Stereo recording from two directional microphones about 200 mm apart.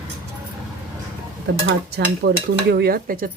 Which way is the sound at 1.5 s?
65° right (ahead or behind).